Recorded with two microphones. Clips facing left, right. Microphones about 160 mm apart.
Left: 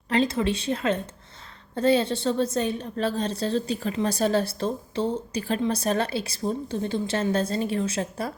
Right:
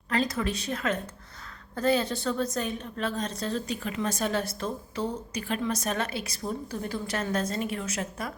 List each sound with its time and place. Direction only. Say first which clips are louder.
0.1 s a woman's voice: left 5 dB; 25° left (ahead or behind)